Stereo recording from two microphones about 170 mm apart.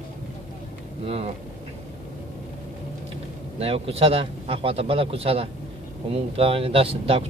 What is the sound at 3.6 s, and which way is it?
A man's voice, 35° right (ahead or behind).